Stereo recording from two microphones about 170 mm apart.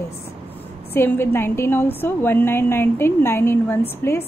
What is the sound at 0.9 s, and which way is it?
A woman's voice, 15° left (ahead or behind).